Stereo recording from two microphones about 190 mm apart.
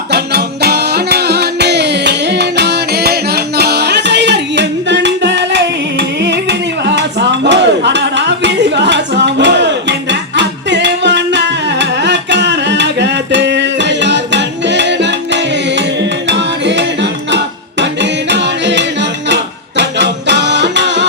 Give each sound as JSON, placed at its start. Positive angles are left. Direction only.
{"t": 0.1, "sound": "music", "side_deg": -60}